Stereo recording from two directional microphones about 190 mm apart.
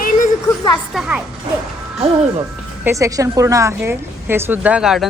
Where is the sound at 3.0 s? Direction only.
15° right (ahead or behind).